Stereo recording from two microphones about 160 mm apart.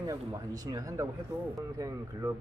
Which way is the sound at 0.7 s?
25° right (ahead or behind).